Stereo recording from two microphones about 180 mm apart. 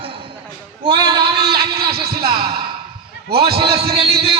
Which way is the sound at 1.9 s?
60° right (ahead or behind).